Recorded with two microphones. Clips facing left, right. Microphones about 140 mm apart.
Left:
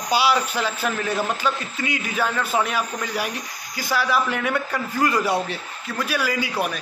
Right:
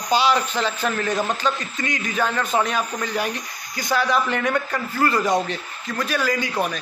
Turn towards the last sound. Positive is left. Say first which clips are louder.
# right 1 dB
turn(degrees=10)  # may be behind; listen again after turning